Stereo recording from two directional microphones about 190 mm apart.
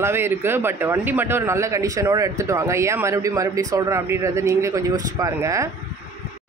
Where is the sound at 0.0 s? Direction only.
10° right (ahead or behind).